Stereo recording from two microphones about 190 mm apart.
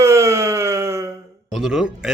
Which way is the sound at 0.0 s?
15° right (ahead or behind).